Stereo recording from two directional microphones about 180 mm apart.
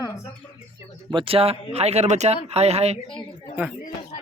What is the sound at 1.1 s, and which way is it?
Speech, 30° right (ahead or behind).